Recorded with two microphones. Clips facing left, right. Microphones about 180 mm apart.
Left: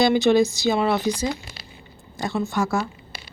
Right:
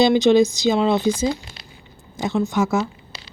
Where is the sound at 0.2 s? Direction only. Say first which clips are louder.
Right 3 dB; 20° right (ahead or behind).